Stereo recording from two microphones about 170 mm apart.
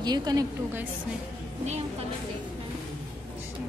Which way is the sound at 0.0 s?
25° right (ahead or behind).